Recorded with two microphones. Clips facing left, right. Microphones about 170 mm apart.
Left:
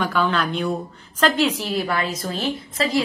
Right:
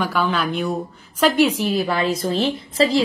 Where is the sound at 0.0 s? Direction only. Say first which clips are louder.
Even; 5° right (ahead or behind).